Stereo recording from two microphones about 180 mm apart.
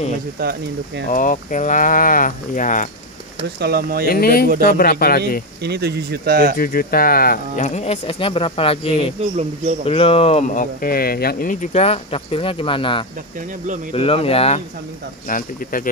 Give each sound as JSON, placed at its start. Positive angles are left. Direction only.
{"t": 0.4, "sound": "speech", "side_deg": -60}
{"t": 1.1, "sound": "speech", "side_deg": 45}
{"t": 3.5, "sound": "speech", "side_deg": -60}
{"t": 4.1, "sound": "speech", "side_deg": 60}
{"t": 5.6, "sound": "speech", "side_deg": -65}
{"t": 6.6, "sound": "speech", "side_deg": 55}
{"t": 9.2, "sound": "speech", "side_deg": -40}
{"t": 9.8, "sound": "speech", "side_deg": 30}
{"t": 15.2, "sound": "speech", "side_deg": 50}